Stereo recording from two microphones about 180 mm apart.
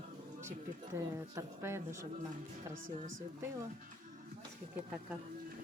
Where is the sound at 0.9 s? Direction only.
15° right (ahead or behind).